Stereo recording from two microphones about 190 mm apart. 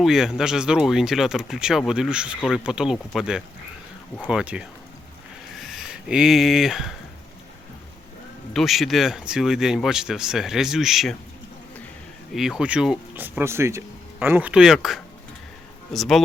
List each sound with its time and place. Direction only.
0.0 s speech: 5° right (ahead or behind)
8.5 s speech: centre (ahead or behind)
12.3 s speech: centre (ahead or behind)